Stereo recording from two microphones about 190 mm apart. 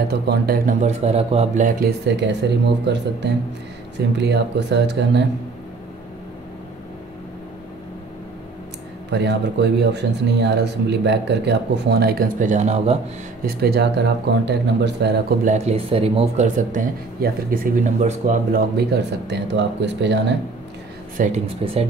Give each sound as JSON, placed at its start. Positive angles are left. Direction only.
{"t": 0.1, "sound": "speech", "side_deg": -55}
{"t": 9.1, "sound": "speech", "side_deg": -65}
{"t": 13.6, "sound": "speech", "side_deg": -60}
{"t": 15.4, "sound": "speech", "side_deg": -35}
{"t": 18.8, "sound": "speech", "side_deg": -60}
{"t": 21.2, "sound": "speech", "side_deg": -45}